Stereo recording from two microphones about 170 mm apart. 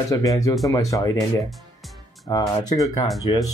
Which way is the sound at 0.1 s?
20° left (ahead or behind).